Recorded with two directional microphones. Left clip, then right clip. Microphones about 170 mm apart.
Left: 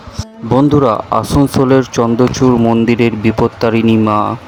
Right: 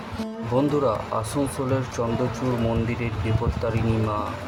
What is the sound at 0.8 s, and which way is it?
Speech, 50° left (ahead or behind).